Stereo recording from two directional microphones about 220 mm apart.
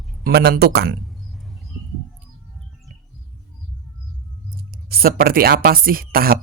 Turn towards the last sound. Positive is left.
turn(degrees=-40)  # may be behind; listen again after turning